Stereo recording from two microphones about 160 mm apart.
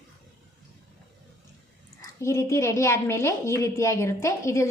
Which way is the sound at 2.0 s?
20° left (ahead or behind).